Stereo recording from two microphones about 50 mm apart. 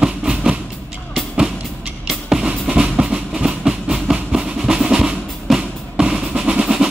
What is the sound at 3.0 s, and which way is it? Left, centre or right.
Train, centre.